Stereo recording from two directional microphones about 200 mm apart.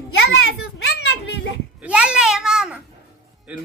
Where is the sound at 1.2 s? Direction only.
60° left (ahead or behind).